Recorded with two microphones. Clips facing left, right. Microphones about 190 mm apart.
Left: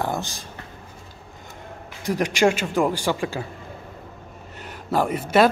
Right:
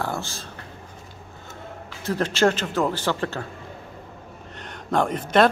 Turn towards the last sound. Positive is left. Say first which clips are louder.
# left 1 dB
turn(degrees=5)  # may be behind; listen again after turning